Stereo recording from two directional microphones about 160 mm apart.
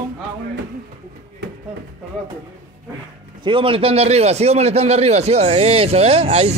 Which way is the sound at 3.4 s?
30° right (ahead or behind).